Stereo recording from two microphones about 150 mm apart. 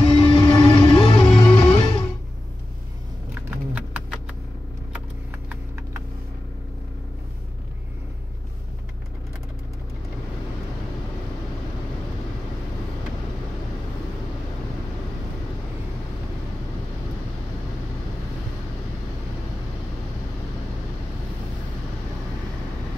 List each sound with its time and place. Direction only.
0.0 s music: 35° left (ahead or behind)
3.4 s typing: 10° right (ahead or behind)
4.9 s a sound: 10° right (ahead or behind)